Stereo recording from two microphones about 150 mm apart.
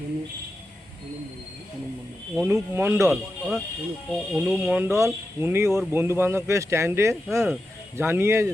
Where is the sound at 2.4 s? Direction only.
15° right (ahead or behind).